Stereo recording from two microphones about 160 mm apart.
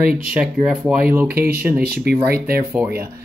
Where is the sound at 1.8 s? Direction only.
80° right.